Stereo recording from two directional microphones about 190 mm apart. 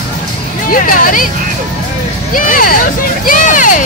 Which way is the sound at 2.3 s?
45° left (ahead or behind).